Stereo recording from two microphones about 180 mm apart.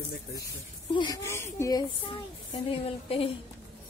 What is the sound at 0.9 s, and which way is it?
Speech, 25° left (ahead or behind).